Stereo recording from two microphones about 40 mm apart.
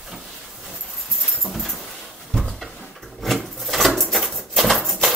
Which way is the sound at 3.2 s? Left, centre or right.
Centre.